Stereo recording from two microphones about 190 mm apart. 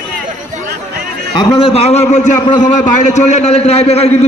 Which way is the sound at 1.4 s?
30° left (ahead or behind).